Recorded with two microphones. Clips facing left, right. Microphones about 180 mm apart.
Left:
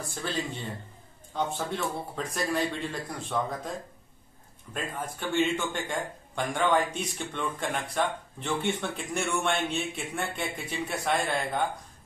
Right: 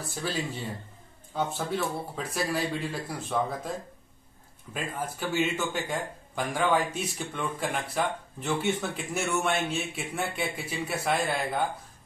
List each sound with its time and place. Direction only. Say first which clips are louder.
0.1 s a man's voice: right 1 dB; 5° right (ahead or behind)
4.7 s a man's voice: right 1 dB; 5° right (ahead or behind)